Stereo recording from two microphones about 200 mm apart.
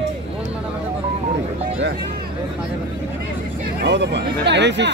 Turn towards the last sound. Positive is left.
turn(degrees=-60)  # may be behind; listen again after turning